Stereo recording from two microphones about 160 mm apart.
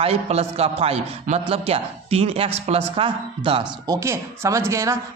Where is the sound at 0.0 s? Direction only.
40° right (ahead or behind).